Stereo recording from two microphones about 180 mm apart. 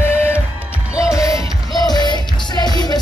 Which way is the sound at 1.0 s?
20° left (ahead or behind).